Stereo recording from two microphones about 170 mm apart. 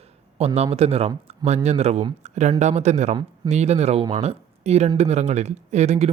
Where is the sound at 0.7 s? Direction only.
35° right (ahead or behind).